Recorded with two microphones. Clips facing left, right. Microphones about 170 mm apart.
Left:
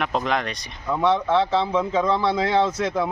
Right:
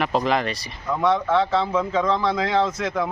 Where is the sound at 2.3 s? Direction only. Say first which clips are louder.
Left 1 dB; 30° left (ahead or behind).